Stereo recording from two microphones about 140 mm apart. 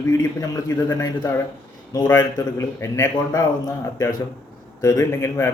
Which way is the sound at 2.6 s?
20° left (ahead or behind).